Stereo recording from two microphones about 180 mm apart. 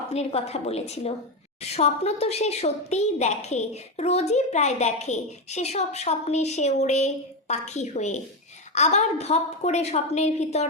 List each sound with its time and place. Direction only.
0.1 s a woman's voice: 35° left (ahead or behind)